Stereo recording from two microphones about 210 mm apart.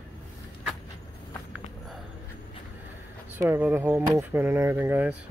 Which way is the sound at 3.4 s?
10° right (ahead or behind).